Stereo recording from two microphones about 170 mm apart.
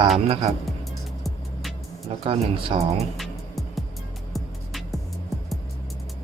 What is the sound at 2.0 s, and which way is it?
Speech, 35° right (ahead or behind).